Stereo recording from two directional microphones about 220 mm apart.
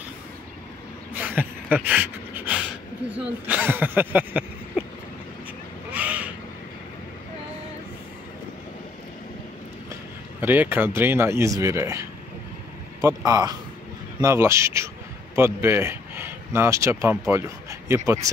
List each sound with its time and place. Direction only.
1.1 s a sound: 10° right (ahead or behind)
3.1 s speech: 5° right (ahead or behind)
5.9 s crow: 5° right (ahead or behind)
10.4 s speech: 10° right (ahead or behind)